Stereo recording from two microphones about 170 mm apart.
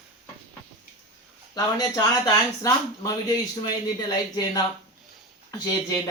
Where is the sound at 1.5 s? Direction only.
25° left (ahead or behind).